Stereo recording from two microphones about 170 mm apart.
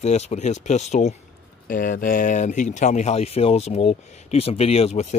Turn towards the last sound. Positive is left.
turn(degrees=40)  # may be behind; listen again after turning